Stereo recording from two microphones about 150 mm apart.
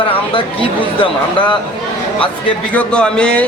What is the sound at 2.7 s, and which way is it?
Speech, 5° left (ahead or behind).